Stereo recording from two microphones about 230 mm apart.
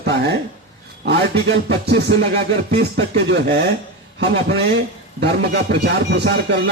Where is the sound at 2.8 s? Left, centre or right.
Right.